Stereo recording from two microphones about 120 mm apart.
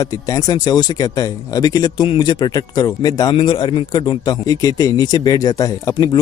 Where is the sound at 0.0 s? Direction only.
30° left (ahead or behind).